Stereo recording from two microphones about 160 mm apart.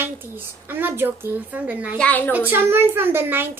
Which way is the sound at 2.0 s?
10° left (ahead or behind).